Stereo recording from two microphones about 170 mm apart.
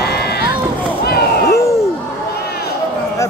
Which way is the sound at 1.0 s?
65° left (ahead or behind).